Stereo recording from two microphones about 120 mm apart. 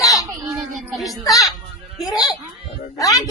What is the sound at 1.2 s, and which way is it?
Speech, 30° left (ahead or behind).